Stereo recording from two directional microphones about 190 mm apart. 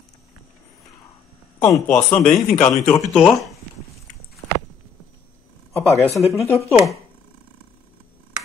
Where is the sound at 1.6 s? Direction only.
20° left (ahead or behind).